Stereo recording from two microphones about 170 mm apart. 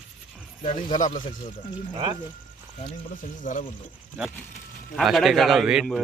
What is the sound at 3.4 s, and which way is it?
Speech, 50° left (ahead or behind).